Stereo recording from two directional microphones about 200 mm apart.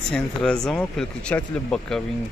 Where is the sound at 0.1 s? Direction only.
5° left (ahead or behind).